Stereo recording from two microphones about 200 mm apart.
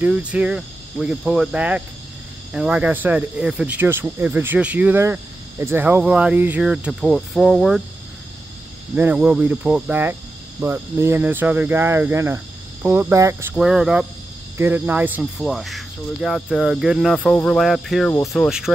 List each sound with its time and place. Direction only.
0.0 s cricket: 5° right (ahead or behind)
2.5 s speech: 5° right (ahead or behind)
8.9 s speech: 5° right (ahead or behind)
14.6 s cricket: 10° right (ahead or behind)